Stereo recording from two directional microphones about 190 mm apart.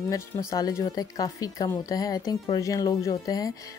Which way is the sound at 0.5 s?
20° left (ahead or behind).